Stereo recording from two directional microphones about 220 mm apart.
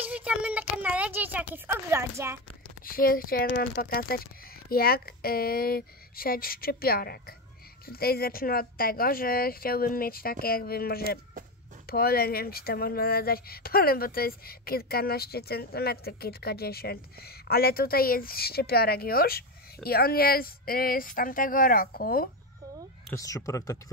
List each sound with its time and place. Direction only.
0.0 s speech: 5° right (ahead or behind)
2.8 s speech: 40° left (ahead or behind)
23.1 s speech: 15° left (ahead or behind)